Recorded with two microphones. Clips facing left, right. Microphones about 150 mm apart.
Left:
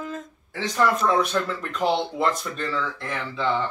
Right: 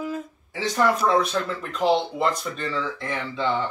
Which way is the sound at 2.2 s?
Centre (ahead or behind).